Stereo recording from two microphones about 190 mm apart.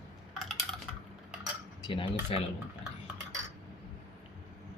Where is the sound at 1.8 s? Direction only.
25° left (ahead or behind).